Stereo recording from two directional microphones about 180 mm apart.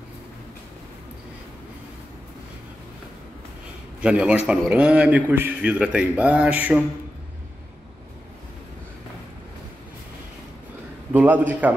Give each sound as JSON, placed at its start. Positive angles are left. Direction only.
{"t": 4.0, "sound": "a man's voice", "side_deg": -5}
{"t": 11.1, "sound": "a man's voice", "side_deg": -10}